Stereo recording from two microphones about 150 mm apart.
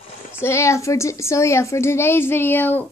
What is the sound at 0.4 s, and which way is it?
A child's voice, 15° left (ahead or behind).